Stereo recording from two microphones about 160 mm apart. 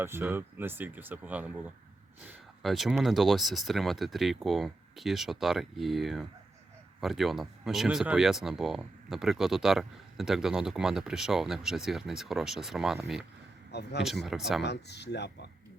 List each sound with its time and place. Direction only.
0.0 s speech: 15° right (ahead or behind)
13.7 s speech: 90° left
14.0 s speech: centre (ahead or behind)
14.6 s speech: 90° left